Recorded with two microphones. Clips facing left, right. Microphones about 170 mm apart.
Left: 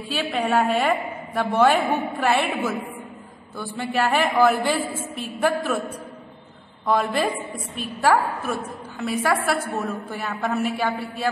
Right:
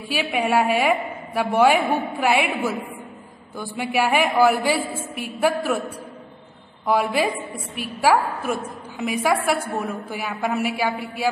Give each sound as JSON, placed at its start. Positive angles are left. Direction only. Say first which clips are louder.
{"t": 0.1, "sound": "a woman's voice", "louder": "right 1 dB", "side_deg": -10}